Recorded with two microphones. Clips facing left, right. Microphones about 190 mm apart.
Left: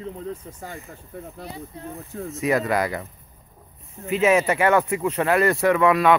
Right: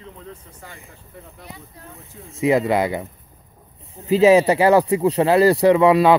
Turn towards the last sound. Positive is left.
turn(degrees=-30)  # may be behind; listen again after turning